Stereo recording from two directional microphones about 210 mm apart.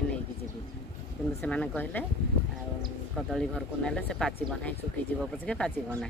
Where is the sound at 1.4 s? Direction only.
5° left (ahead or behind).